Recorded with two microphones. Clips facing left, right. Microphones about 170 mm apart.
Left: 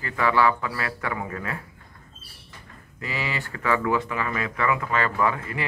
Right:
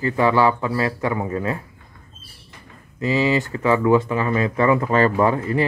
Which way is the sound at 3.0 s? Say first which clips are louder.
Right 12 dB; 25° right (ahead or behind).